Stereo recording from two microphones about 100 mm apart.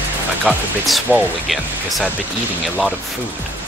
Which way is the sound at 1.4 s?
Centre (ahead or behind).